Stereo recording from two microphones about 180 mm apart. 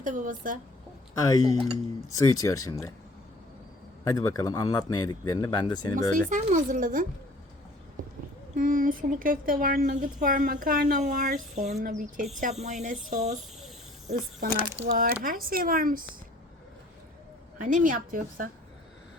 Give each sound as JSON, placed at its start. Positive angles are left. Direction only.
{"t": 0.0, "sound": "speech", "side_deg": -45}
{"t": 1.1, "sound": "speech", "side_deg": 20}
{"t": 4.0, "sound": "speech", "side_deg": 20}
{"t": 6.1, "sound": "speech", "side_deg": -45}
{"t": 8.5, "sound": "speech", "side_deg": -50}
{"t": 14.4, "sound": "speech", "side_deg": -60}
{"t": 17.6, "sound": "speech", "side_deg": -45}